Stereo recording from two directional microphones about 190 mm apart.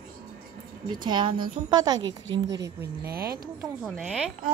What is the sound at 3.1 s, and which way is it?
Speech, 55° right (ahead or behind).